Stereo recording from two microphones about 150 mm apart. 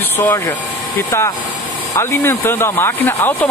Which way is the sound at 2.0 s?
15° left (ahead or behind).